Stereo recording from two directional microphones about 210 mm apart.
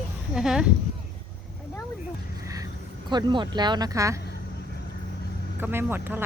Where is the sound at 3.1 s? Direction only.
20° right (ahead or behind).